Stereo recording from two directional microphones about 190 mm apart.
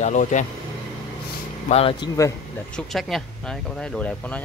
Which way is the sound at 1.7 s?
30° left (ahead or behind).